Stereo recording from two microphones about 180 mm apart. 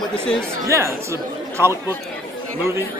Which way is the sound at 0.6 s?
15° right (ahead or behind).